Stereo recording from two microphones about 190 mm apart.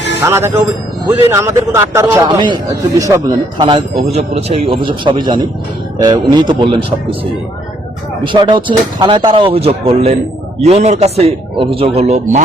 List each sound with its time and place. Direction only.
0.2 s a man's voice: 15° right (ahead or behind)
3.6 s speech: 25° right (ahead or behind)
8.2 s a man's voice: 25° right (ahead or behind)